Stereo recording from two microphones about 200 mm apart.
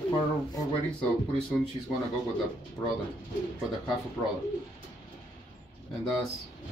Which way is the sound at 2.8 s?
5° left (ahead or behind).